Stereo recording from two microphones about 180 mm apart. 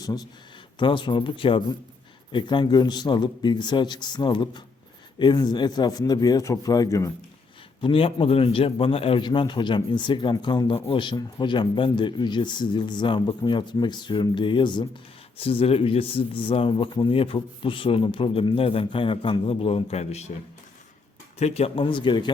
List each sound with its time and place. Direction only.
0.0 s speech: 20° left (ahead or behind)
7.8 s speech: 30° left (ahead or behind)
21.3 s speech: 35° left (ahead or behind)